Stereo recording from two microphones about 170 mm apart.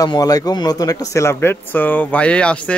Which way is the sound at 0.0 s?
20° left (ahead or behind).